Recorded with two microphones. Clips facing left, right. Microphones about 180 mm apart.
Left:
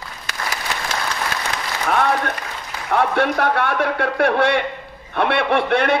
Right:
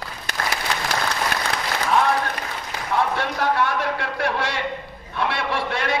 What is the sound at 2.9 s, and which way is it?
A man's voice, 60° left (ahead or behind).